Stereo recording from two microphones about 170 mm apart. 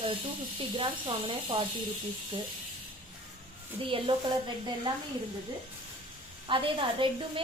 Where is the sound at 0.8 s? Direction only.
30° right (ahead or behind).